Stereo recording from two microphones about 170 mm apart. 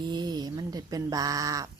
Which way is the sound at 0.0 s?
25° right (ahead or behind).